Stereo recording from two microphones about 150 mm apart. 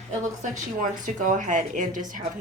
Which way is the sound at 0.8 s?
60° right (ahead or behind).